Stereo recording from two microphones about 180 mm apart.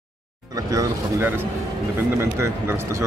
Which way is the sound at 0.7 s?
15° right (ahead or behind).